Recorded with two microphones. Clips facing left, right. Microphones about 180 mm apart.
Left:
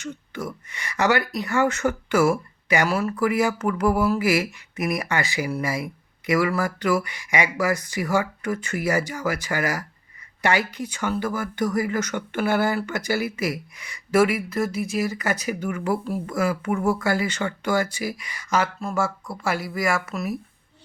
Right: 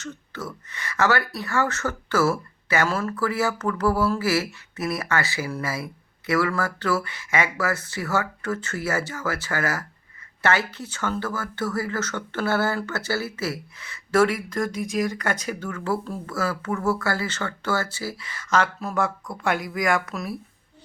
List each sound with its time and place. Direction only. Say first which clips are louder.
0.0 s speech: left 3 dB; 15° left (ahead or behind)
18.8 s speech: even; centre (ahead or behind)